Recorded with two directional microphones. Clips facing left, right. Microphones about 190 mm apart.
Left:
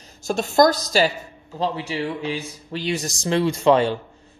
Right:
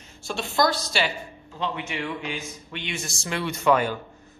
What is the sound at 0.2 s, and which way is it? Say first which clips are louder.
Speech: left 7 dB; 45° left (ahead or behind).